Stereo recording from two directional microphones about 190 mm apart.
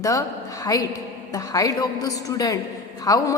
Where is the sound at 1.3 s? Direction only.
20° left (ahead or behind).